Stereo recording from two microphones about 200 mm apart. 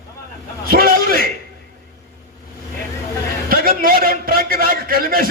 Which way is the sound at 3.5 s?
45° right (ahead or behind).